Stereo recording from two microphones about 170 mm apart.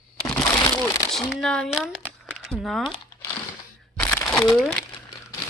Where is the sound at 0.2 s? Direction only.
5° left (ahead or behind).